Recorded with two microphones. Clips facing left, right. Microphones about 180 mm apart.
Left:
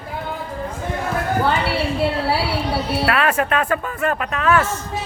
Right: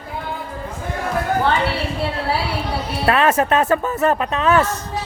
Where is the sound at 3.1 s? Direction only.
25° right (ahead or behind).